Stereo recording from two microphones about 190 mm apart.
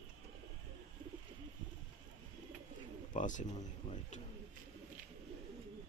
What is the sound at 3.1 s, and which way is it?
Speech, 40° left (ahead or behind).